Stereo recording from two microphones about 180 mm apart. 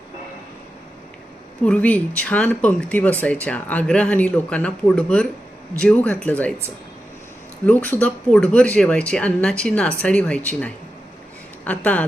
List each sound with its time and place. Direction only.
1.6 s speech: 5° left (ahead or behind)
7.6 s speech: 10° left (ahead or behind)